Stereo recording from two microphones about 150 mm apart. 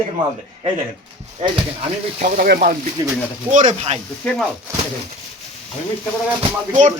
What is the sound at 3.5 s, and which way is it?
Speech, 55° right (ahead or behind).